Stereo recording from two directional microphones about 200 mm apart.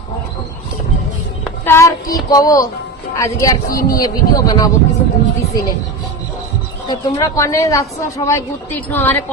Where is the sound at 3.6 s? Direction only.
45° left (ahead or behind).